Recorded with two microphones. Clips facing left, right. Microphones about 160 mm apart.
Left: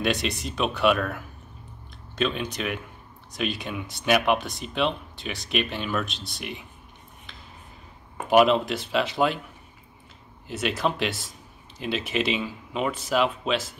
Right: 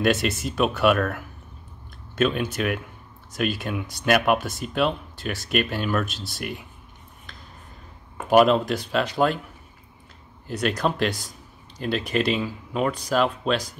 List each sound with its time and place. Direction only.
0.0 s speech: centre (ahead or behind)
8.3 s speech: centre (ahead or behind)
10.4 s speech: centre (ahead or behind)